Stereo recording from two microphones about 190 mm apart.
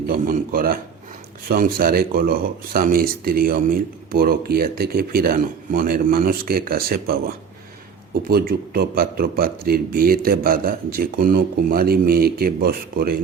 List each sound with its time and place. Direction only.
0.1 s speech: 50° right (ahead or behind)